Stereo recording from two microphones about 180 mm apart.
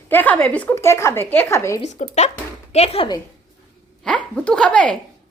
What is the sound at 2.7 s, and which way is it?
Speech, 35° left (ahead or behind).